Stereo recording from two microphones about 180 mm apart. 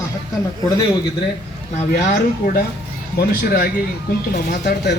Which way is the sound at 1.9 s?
50° left (ahead or behind).